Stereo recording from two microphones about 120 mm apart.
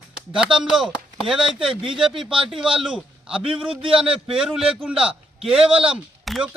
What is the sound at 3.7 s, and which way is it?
Speech, 50° right (ahead or behind).